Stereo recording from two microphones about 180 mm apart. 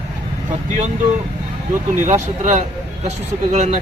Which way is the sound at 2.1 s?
45° right (ahead or behind).